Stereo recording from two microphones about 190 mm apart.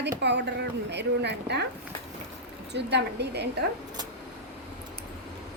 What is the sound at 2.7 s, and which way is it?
Speech, 65° right (ahead or behind).